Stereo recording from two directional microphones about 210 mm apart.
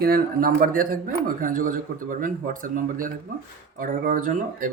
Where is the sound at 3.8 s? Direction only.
40° right (ahead or behind).